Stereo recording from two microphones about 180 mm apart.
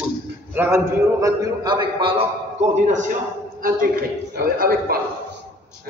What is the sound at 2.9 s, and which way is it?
A man's voice, 45° right (ahead or behind).